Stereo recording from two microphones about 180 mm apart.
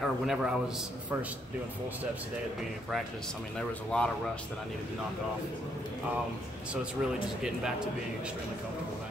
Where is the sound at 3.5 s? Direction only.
5° left (ahead or behind).